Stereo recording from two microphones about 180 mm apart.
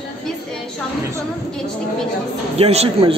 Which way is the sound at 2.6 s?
35° right (ahead or behind).